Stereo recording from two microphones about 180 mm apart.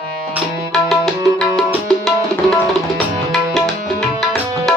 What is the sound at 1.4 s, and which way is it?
Tabla, centre (ahead or behind).